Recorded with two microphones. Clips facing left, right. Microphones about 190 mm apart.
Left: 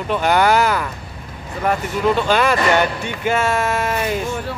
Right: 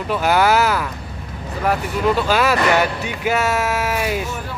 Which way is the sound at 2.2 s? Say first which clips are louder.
Even; 5° right (ahead or behind).